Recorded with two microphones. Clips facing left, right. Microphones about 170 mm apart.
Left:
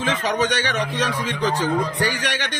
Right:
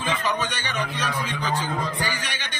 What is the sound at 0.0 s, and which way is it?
A man's voice, 85° left.